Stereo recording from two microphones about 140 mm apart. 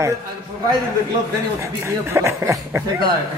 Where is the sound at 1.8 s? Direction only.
20° right (ahead or behind).